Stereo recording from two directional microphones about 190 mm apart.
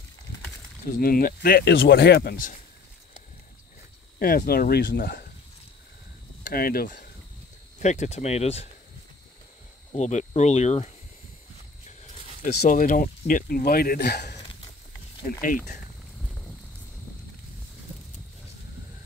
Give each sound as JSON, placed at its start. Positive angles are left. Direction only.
{"t": 0.9, "sound": "speech", "side_deg": 50}
{"t": 4.2, "sound": "speech", "side_deg": 50}
{"t": 6.4, "sound": "speech", "side_deg": 50}
{"t": 7.8, "sound": "speech", "side_deg": 35}
{"t": 9.9, "sound": "speech", "side_deg": 35}
{"t": 12.6, "sound": "speech", "side_deg": 45}
{"t": 15.2, "sound": "speech", "side_deg": 45}